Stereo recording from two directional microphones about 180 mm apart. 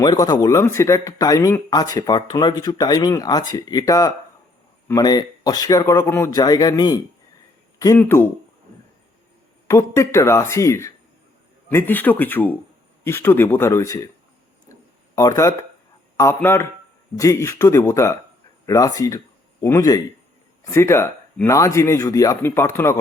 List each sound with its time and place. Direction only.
0.0 s speech: 20° left (ahead or behind)
9.6 s speech: 15° left (ahead or behind)
14.7 s a sound: 20° left (ahead or behind)
16.1 s speech: 15° left (ahead or behind)